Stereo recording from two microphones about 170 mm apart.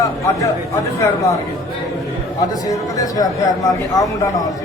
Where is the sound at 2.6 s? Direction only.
20° left (ahead or behind).